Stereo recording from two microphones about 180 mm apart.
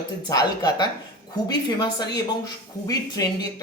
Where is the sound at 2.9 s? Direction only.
20° left (ahead or behind).